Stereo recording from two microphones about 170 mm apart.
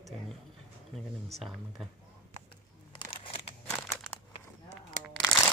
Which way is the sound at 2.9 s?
30° left (ahead or behind).